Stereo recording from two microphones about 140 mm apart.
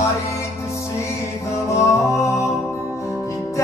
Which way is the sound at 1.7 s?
20° left (ahead or behind).